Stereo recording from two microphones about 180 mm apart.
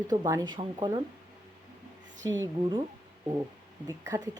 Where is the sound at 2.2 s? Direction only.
20° right (ahead or behind).